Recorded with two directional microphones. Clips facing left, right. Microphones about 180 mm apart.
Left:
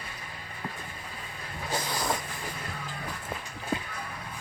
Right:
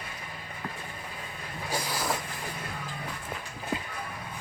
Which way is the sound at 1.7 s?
5° right (ahead or behind).